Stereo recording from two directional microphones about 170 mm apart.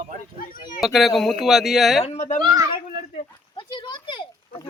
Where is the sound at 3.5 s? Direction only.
25° left (ahead or behind).